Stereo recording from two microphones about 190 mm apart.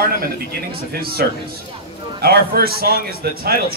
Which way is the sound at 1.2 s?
55° right (ahead or behind).